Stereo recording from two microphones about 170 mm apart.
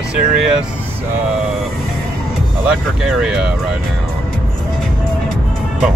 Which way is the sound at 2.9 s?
Centre (ahead or behind).